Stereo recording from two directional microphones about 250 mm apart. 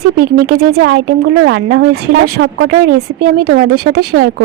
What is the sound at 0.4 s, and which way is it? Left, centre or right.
A woman's voice, right.